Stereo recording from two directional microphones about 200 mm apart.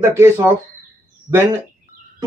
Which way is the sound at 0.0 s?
10° right (ahead or behind).